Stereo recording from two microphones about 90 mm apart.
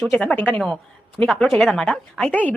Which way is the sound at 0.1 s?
15° left (ahead or behind).